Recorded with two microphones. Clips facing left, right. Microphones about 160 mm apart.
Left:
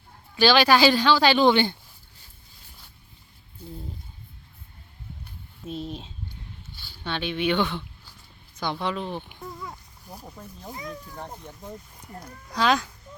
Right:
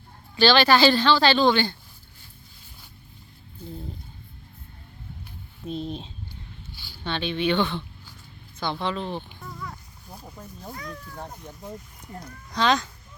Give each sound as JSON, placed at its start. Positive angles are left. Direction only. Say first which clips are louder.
{"t": 0.3, "sound": "speech", "louder": "even", "side_deg": 10}
{"t": 5.6, "sound": "speech", "louder": "right 2 dB", "side_deg": 5}
{"t": 10.2, "sound": "speech", "louder": "right 3 dB", "side_deg": 0}
{"t": 10.7, "sound": "speech", "louder": "left 2 dB", "side_deg": 20}
{"t": 12.5, "sound": "speech", "louder": "even", "side_deg": 5}